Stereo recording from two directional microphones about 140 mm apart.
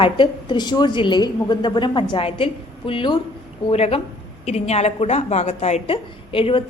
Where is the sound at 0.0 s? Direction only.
35° left (ahead or behind).